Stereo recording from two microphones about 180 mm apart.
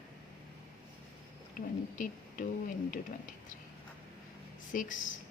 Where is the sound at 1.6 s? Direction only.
50° left (ahead or behind).